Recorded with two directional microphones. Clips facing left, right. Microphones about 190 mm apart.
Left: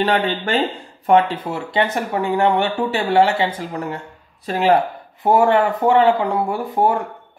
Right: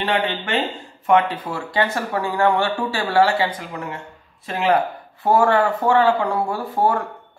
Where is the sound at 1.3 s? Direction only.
25° left (ahead or behind).